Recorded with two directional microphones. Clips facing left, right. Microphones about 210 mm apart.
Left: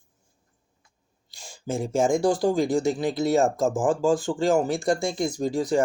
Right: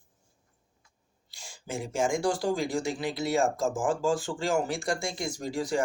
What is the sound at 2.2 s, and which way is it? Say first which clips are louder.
Speech: left 6 dB; 20° left (ahead or behind).